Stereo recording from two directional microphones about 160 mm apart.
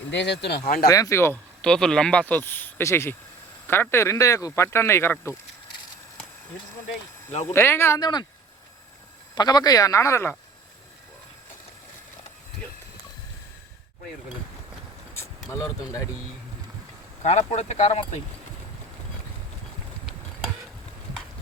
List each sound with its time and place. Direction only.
0.1 s speech: 90° left; by 0.9 s 70° left (ahead or behind)
0.9 s speech: 20° left (ahead or behind)
1.6 s speech: 5° left (ahead or behind)
7.5 s speech: 15° left (ahead or behind)
9.3 s speech: 25° left (ahead or behind)
15.4 s speech: 20° left (ahead or behind)
17.2 s speech: 45° left (ahead or behind)